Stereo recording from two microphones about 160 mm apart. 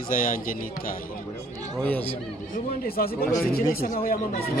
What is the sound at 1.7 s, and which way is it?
Speech, 10° left (ahead or behind).